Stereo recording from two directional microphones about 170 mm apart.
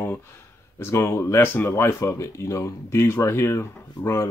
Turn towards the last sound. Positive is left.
turn(degrees=15)  # may be behind; listen again after turning